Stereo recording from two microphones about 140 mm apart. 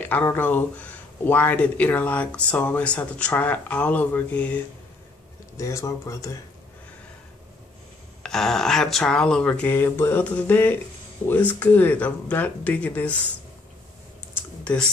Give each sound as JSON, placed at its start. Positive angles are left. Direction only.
{"t": 0.1, "sound": "speech", "side_deg": 15}
{"t": 5.6, "sound": "speech", "side_deg": 20}
{"t": 8.2, "sound": "speech", "side_deg": 5}
{"t": 14.3, "sound": "computer keyboard", "side_deg": 10}